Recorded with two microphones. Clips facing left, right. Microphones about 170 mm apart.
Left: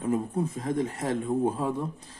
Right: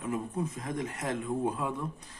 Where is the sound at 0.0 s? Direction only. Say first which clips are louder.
Left 5 dB; 30° left (ahead or behind).